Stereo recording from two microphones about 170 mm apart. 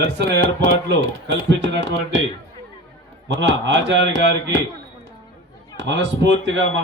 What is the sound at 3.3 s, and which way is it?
A man's voice, 90° right.